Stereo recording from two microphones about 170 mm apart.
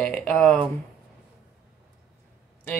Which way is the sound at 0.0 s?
10° left (ahead or behind).